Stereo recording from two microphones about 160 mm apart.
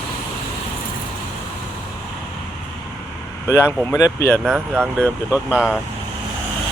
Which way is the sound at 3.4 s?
15° left (ahead or behind).